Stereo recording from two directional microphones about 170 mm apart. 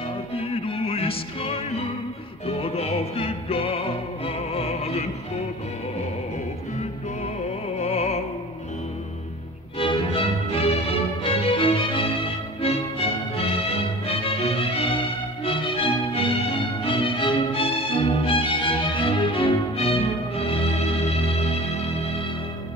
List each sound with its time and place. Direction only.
0.7 s music: 35° left (ahead or behind)
7.8 s music: 40° left (ahead or behind)
9.8 s music: 30° left (ahead or behind)